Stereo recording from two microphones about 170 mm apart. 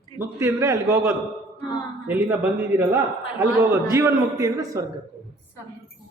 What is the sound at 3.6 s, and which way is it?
A man's voice, 15° right (ahead or behind).